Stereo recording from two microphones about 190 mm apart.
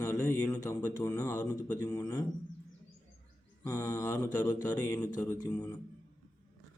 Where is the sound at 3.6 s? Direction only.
20° left (ahead or behind).